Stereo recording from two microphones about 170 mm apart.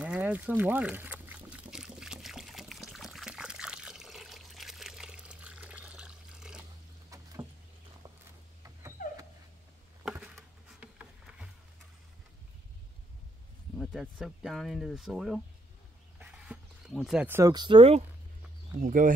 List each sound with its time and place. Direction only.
0.0 s pour: 5° right (ahead or behind)
8.6 s dog: 20° right (ahead or behind)
10.0 s a sound: 5° right (ahead or behind)
13.7 s speech: centre (ahead or behind)
16.2 s a sound: centre (ahead or behind)
17.5 s speech: 25° right (ahead or behind)
18.8 s speech: 50° right (ahead or behind)